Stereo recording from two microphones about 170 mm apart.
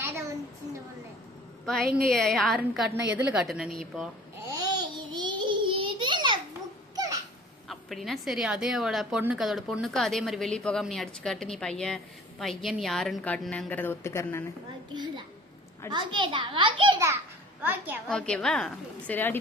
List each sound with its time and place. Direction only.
1.6 s a woman's voice: centre (ahead or behind)
4.5 s child singing: 25° right (ahead or behind)
6.9 s a sound: 20° right (ahead or behind)
7.7 s a woman's voice: centre (ahead or behind)
14.9 s a sound: 25° right (ahead or behind)
15.9 s a child's voice: 25° right (ahead or behind)
17.6 s a woman's voice: 10° right (ahead or behind)
18.1 s a woman's voice: 5° left (ahead or behind)